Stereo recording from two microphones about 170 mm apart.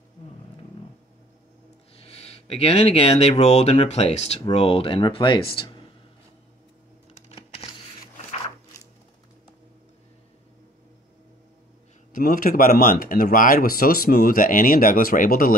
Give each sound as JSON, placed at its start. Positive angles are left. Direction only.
{"t": 2.0, "sound": "speech", "side_deg": 35}
{"t": 7.2, "sound": "a sound", "side_deg": 35}
{"t": 12.1, "sound": "speech", "side_deg": 55}